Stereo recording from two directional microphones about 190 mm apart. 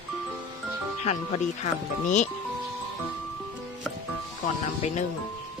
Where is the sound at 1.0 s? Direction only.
35° left (ahead or behind).